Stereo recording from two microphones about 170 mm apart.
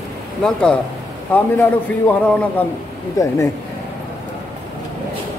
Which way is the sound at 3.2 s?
20° left (ahead or behind).